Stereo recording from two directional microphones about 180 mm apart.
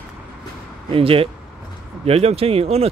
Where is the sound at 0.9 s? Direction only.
30° right (ahead or behind).